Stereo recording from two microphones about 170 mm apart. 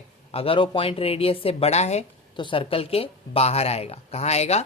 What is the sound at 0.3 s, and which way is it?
A man's voice, 35° left (ahead or behind).